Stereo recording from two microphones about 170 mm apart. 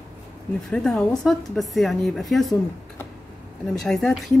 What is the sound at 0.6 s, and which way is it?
A woman's voice, 5° left (ahead or behind).